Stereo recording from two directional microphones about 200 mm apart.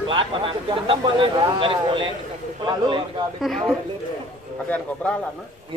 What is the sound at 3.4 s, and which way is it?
A man's voice, centre (ahead or behind).